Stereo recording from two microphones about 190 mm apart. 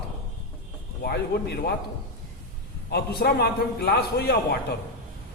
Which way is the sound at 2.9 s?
55° left (ahead or behind).